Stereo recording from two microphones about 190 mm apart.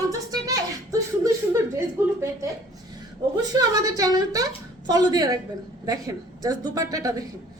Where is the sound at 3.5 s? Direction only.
20° right (ahead or behind).